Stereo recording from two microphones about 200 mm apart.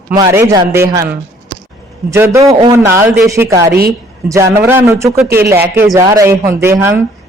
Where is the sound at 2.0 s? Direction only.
15° right (ahead or behind).